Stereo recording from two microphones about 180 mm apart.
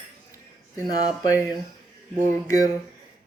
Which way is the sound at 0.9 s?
20° left (ahead or behind).